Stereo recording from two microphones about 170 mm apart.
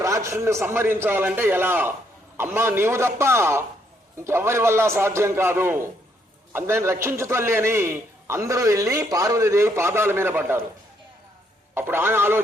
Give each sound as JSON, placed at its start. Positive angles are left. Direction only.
{"t": 0.0, "sound": "a man's voice", "side_deg": -15}
{"t": 11.7, "sound": "a man's voice", "side_deg": -15}